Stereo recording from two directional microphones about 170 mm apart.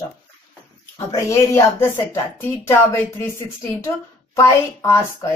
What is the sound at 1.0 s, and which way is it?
Speech, 15° left (ahead or behind).